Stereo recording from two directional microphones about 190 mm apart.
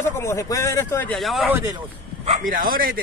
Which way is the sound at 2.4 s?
45° right (ahead or behind).